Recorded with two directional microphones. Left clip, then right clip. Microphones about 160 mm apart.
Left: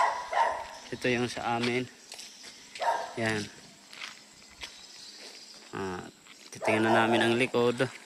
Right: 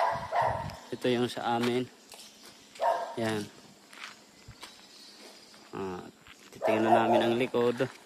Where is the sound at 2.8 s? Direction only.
90° right.